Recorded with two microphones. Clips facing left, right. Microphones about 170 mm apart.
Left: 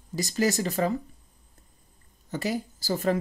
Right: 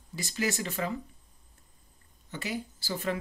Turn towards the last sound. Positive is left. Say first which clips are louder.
# left 7 dB
turn(degrees=40)  # may be behind; listen again after turning